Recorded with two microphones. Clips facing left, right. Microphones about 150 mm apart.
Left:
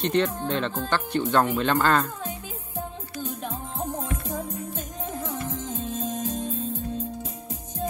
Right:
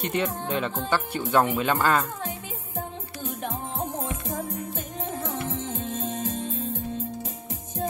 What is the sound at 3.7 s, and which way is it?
Music, 20° right (ahead or behind).